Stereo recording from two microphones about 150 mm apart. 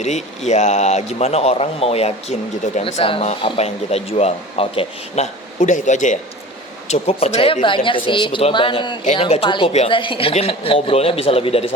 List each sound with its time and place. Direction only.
0.0 s a man's voice: 50° left (ahead or behind)